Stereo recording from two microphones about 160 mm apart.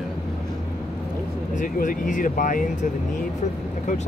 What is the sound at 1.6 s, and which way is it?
Speech, 55° left (ahead or behind).